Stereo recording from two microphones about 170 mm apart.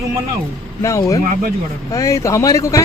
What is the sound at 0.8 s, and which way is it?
Speech, 20° left (ahead or behind).